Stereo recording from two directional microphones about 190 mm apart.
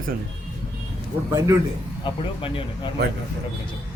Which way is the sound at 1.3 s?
15° right (ahead or behind).